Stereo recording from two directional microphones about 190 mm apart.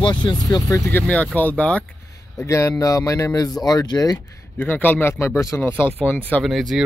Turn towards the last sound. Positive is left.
turn(degrees=0)  # may be behind; listen again after turning